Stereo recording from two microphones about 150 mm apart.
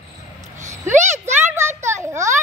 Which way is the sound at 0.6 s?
50° right (ahead or behind).